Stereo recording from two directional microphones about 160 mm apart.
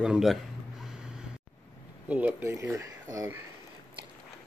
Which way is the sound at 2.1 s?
10° right (ahead or behind).